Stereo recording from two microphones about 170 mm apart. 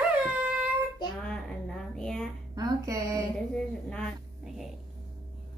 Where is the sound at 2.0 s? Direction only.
5° left (ahead or behind).